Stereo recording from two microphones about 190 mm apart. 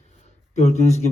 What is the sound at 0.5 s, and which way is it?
Speech, 35° left (ahead or behind).